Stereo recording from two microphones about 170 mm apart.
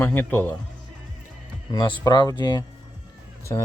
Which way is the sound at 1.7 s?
25° left (ahead or behind).